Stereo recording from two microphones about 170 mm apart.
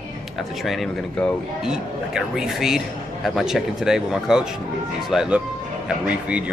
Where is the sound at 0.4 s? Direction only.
Centre (ahead or behind).